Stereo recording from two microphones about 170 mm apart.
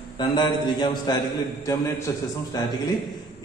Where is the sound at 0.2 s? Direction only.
25° left (ahead or behind).